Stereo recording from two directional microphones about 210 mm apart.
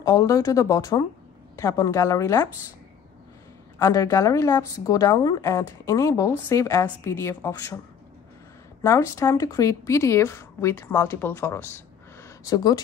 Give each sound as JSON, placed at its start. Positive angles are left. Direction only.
{"t": 0.0, "sound": "speech", "side_deg": 15}
{"t": 3.8, "sound": "speech", "side_deg": 15}
{"t": 8.8, "sound": "speech", "side_deg": 15}
{"t": 12.2, "sound": "a sound", "side_deg": 20}